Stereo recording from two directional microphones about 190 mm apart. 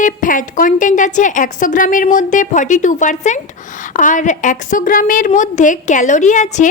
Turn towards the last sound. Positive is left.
turn(degrees=40)  # may be behind; listen again after turning